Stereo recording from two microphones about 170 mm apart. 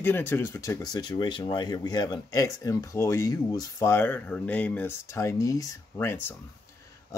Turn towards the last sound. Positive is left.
turn(degrees=15)  # may be behind; listen again after turning